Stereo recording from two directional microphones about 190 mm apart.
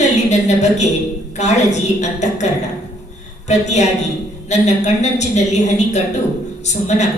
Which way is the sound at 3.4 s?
35° left (ahead or behind).